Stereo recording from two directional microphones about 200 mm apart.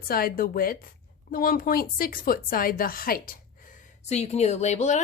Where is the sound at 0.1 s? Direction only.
45° left (ahead or behind).